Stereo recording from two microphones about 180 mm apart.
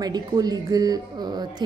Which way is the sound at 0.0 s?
20° right (ahead or behind).